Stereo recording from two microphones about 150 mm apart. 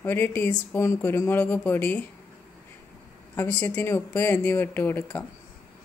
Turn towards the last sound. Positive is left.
turn(degrees=15)  # may be behind; listen again after turning